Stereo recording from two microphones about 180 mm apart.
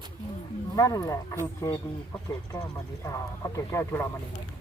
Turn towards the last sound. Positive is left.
turn(degrees=15)  # may be behind; listen again after turning